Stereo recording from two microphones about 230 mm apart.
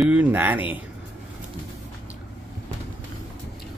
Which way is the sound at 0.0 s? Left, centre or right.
Centre.